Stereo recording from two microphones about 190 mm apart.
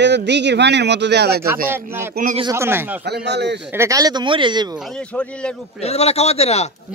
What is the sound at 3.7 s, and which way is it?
Speech, 15° right (ahead or behind).